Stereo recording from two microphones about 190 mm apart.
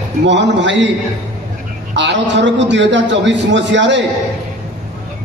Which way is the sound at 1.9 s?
70° right (ahead or behind).